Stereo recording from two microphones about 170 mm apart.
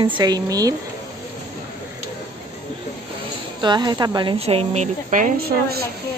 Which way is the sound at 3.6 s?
25° right (ahead or behind).